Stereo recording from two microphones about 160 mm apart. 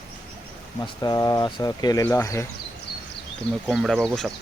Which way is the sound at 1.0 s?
25° left (ahead or behind).